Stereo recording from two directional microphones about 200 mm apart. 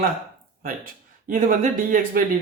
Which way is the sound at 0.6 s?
45° right (ahead or behind).